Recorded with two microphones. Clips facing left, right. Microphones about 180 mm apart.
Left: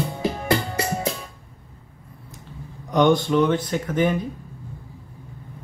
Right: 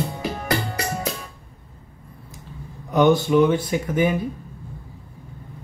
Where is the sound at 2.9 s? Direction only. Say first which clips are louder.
Right 1 dB; 5° right (ahead or behind).